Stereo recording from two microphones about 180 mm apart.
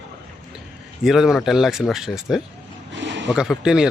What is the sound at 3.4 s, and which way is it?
Speech, 5° right (ahead or behind).